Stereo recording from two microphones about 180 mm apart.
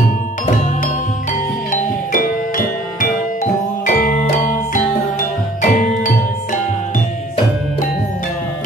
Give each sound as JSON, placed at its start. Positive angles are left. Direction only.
{"t": 1.7, "sound": "music", "side_deg": 50}